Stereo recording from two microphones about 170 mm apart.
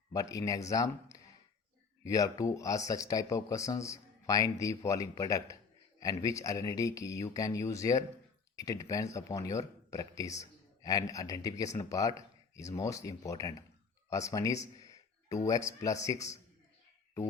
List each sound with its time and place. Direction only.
0.1 s speech: 20° left (ahead or behind)